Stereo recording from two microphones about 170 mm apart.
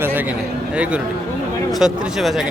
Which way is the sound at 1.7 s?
Centre (ahead or behind).